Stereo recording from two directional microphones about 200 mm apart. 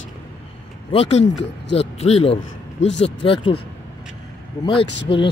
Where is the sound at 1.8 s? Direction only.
30° left (ahead or behind).